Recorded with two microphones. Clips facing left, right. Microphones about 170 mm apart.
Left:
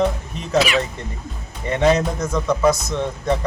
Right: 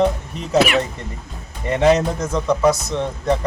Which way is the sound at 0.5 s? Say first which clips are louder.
Right 2 dB; 60° right (ahead or behind).